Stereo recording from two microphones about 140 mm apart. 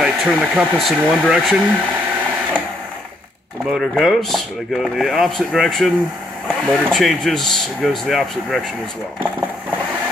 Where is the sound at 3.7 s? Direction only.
Centre (ahead or behind).